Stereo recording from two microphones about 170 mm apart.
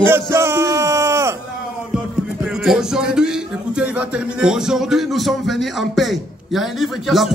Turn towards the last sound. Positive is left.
turn(degrees=0)  # may be behind; listen again after turning